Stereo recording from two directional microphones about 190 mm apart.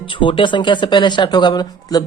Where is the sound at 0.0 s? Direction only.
25° left (ahead or behind).